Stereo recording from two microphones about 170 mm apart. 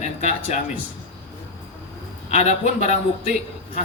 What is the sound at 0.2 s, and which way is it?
Speech, 40° left (ahead or behind).